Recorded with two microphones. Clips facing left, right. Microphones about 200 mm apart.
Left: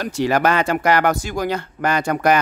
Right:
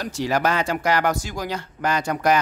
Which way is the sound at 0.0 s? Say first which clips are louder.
Left 4 dB; 60° left (ahead or behind).